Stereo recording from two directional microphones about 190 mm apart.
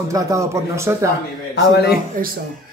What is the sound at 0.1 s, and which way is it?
A man's voice, 15° right (ahead or behind).